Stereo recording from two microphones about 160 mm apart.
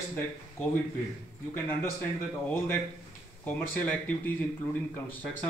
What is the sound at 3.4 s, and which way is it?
Speech, 10° left (ahead or behind).